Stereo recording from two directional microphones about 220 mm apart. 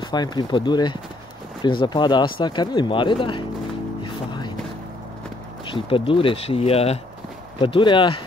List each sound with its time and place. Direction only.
0.0 s speech: 20° left (ahead or behind)
4.0 s music: 20° left (ahead or behind)
5.7 s speech: 25° left (ahead or behind)